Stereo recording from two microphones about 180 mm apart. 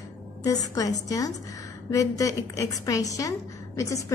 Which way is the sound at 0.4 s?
20° left (ahead or behind).